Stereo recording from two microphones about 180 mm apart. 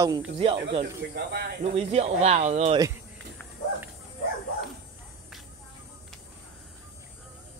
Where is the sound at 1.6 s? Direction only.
35° right (ahead or behind).